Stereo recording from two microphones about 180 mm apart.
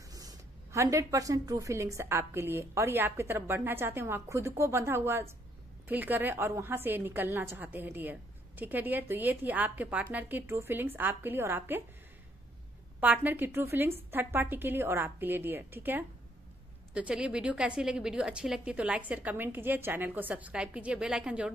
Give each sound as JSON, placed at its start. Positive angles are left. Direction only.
{"t": 0.1, "sound": "a woman's voice", "side_deg": -20}
{"t": 13.0, "sound": "a woman's voice", "side_deg": -10}